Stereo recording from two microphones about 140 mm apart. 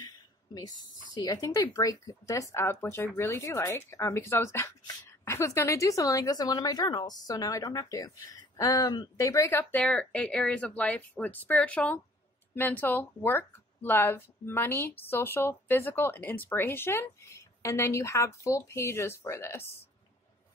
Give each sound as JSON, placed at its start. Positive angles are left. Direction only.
{"t": 0.0, "sound": "speech", "side_deg": 30}